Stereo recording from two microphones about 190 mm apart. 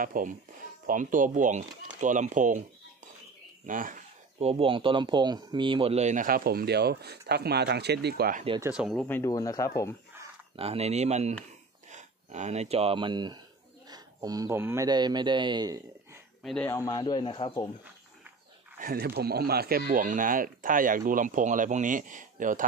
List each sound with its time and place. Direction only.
0.0 s speech: 45° right (ahead or behind)
3.6 s speech: 45° right (ahead or behind)
8.7 s speech: centre (ahead or behind)
9.0 s speech: 15° left (ahead or behind)
10.5 s a man's voice: 30° right (ahead or behind)
16.4 s speech: 5° left (ahead or behind)
16.7 s a man's voice: 20° left (ahead or behind)
18.8 s speech: 50° right (ahead or behind)